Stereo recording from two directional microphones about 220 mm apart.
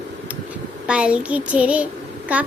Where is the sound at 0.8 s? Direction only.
5° right (ahead or behind).